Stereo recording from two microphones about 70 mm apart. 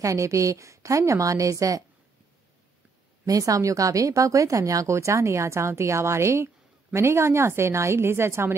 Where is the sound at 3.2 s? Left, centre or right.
Right.